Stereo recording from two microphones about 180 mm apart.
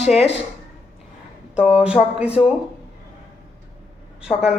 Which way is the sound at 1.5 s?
5° right (ahead or behind).